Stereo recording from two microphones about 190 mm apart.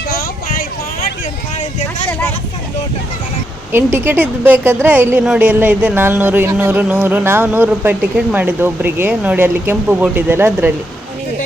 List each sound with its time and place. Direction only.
0.1 s a sound: 50° left (ahead or behind)
1.5 s vehicle: 40° left (ahead or behind)
3.9 s a woman's voice: 10° right (ahead or behind)